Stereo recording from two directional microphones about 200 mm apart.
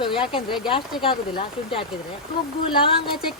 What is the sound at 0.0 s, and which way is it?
Speech, 25° left (ahead or behind).